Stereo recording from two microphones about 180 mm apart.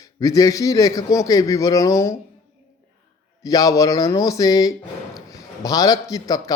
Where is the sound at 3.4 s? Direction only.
20° left (ahead or behind).